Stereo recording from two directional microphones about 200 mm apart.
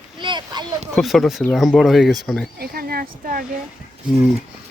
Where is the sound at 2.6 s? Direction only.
50° right (ahead or behind).